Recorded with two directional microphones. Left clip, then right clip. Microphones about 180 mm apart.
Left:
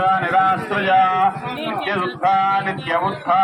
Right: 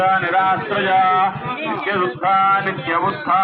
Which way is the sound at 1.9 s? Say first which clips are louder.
Right 1 dB; 80° left.